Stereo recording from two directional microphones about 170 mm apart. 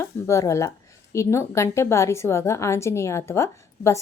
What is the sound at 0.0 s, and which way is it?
A woman's voice, 15° left (ahead or behind).